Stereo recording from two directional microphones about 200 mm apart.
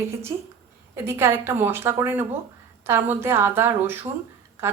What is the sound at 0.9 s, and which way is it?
A woman's voice, 10° right (ahead or behind).